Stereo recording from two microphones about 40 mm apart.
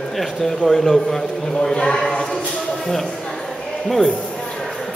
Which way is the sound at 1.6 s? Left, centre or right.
Centre.